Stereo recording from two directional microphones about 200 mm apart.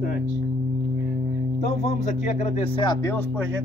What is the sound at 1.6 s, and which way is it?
Speech, 35° left (ahead or behind).